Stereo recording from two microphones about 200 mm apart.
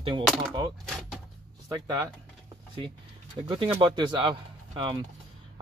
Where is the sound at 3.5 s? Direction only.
25° right (ahead or behind).